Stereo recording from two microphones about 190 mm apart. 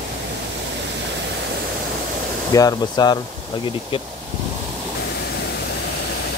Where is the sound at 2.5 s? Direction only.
20° left (ahead or behind).